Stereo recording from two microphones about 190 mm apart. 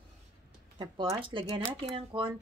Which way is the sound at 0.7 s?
20° right (ahead or behind).